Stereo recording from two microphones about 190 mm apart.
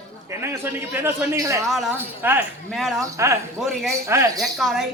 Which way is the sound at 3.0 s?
15° right (ahead or behind).